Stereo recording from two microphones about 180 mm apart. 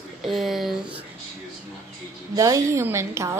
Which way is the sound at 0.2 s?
Centre (ahead or behind).